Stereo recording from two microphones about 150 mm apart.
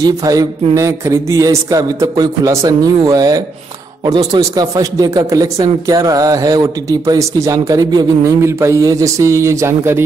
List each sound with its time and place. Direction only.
0.0 s a man's voice: 25° right (ahead or behind)